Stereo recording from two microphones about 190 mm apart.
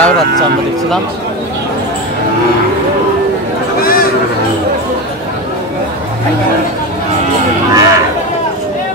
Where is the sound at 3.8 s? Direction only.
50° left (ahead or behind).